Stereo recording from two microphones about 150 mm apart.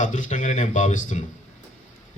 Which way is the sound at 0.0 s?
55° left (ahead or behind).